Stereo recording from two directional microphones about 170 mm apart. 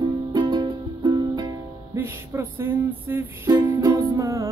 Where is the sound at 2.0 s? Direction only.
15° right (ahead or behind).